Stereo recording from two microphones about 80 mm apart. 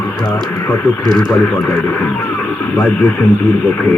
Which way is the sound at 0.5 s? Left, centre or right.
Left.